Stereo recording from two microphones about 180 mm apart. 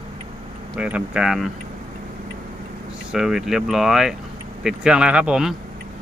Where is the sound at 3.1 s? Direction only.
Centre (ahead or behind).